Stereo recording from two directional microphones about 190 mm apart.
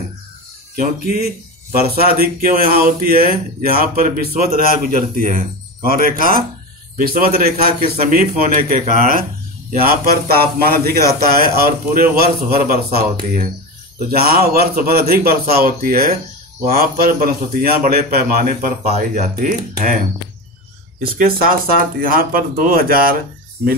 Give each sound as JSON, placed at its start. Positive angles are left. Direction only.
{"t": 0.7, "sound": "speech", "side_deg": -50}
{"t": 18.9, "sound": "speech", "side_deg": -40}
{"t": 21.2, "sound": "speech", "side_deg": -50}